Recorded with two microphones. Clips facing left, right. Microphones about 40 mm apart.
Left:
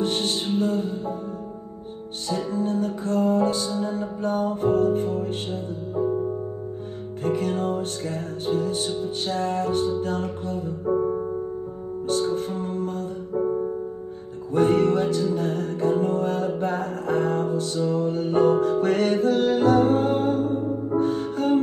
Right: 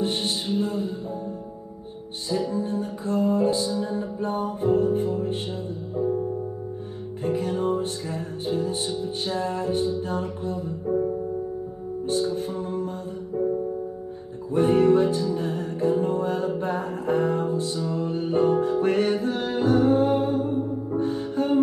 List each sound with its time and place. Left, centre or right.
0.5 s music: left
2.2 s music: left
7.2 s music: left
12.1 s music: left
14.5 s music: left